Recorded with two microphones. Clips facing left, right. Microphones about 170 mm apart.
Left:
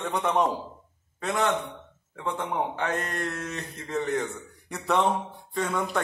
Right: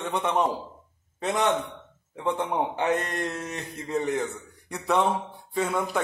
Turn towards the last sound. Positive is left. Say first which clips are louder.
# right 1 dB
turn(degrees=-10)  # may be behind; listen again after turning